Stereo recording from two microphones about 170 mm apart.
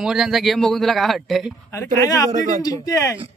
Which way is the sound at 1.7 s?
20° left (ahead or behind).